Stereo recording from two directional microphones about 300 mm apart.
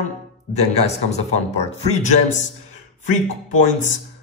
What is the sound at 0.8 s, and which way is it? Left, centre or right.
Speech, left.